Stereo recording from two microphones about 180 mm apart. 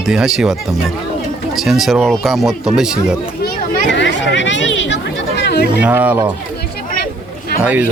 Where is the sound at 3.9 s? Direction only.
85° left.